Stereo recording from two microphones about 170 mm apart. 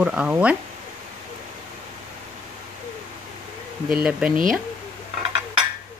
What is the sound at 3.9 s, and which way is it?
Speech, 5° right (ahead or behind).